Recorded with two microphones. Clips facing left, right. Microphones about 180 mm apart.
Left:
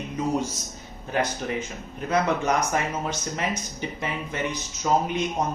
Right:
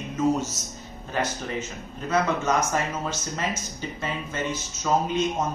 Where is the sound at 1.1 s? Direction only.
15° left (ahead or behind).